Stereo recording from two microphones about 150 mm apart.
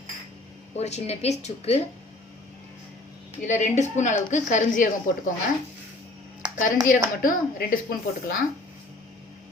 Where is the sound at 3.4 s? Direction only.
50° left (ahead or behind).